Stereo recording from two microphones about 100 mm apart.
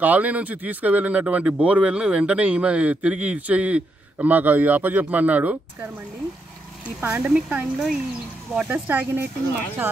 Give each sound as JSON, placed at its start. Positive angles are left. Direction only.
{"t": 0.0, "sound": "speech", "side_deg": -15}